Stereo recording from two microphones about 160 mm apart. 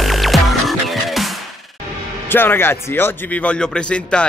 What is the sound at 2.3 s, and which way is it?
A man's voice, 15° left (ahead or behind).